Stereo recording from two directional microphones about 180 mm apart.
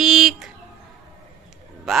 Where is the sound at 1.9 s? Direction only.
Centre (ahead or behind).